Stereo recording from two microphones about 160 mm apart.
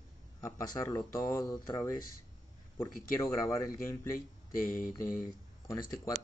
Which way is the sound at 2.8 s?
20° left (ahead or behind).